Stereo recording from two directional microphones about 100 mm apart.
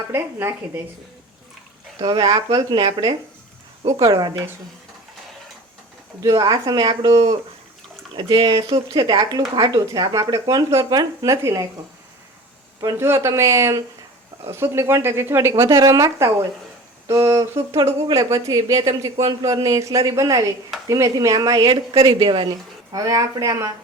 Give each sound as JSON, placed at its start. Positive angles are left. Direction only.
{"t": 0.1, "sound": "a woman's voice", "side_deg": -25}
{"t": 2.0, "sound": "speech", "side_deg": -55}
{"t": 6.1, "sound": "a woman's voice", "side_deg": -35}
{"t": 8.1, "sound": "a woman's voice", "side_deg": -60}
{"t": 13.0, "sound": "a woman's voice", "side_deg": -25}
{"t": 21.9, "sound": "a woman's voice", "side_deg": -65}